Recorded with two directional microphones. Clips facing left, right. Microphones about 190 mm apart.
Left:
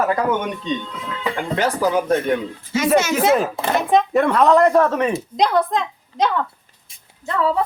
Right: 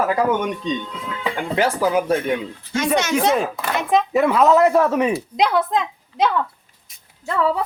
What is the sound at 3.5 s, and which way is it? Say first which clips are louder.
Speech: left 4 dB; 30° left (ahead or behind).